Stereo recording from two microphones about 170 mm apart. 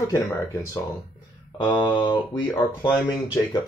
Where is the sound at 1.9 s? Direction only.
25° left (ahead or behind).